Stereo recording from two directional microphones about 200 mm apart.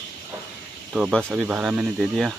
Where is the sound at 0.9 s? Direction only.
Centre (ahead or behind).